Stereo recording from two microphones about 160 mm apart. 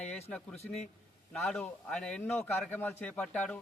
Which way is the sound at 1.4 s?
5° left (ahead or behind).